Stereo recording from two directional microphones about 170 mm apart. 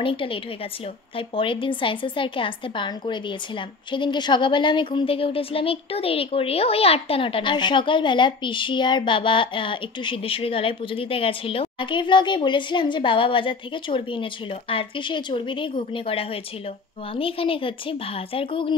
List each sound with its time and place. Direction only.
0.0 s a woman's voice: 30° left (ahead or behind)